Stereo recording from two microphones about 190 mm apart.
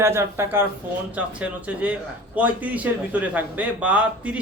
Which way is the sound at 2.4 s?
10° right (ahead or behind).